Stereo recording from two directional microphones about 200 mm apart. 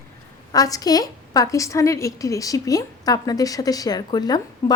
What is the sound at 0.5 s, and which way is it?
A woman's voice, 20° left (ahead or behind).